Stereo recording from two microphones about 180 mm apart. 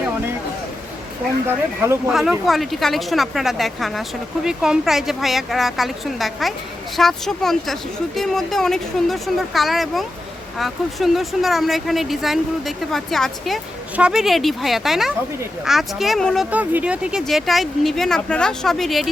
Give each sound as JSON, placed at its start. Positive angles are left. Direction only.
{"t": 1.5, "sound": "speech", "side_deg": -15}
{"t": 2.1, "sound": "speech", "side_deg": 0}